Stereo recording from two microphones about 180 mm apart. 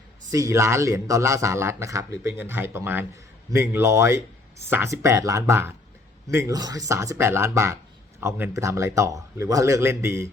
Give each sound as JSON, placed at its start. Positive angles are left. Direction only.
{"t": 0.3, "sound": "a man's voice", "side_deg": -15}